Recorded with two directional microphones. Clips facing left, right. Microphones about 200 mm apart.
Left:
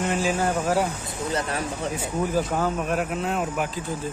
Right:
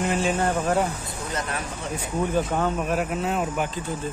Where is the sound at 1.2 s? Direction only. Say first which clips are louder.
Left 4 dB; 35° left (ahead or behind).